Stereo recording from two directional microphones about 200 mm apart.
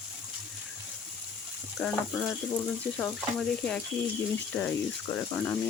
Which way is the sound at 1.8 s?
10° left (ahead or behind).